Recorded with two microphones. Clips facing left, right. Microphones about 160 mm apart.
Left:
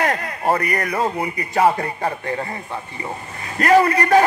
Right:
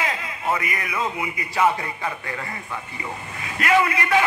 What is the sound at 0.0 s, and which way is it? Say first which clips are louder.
A man's voice: left 6 dB; 55° left (ahead or behind).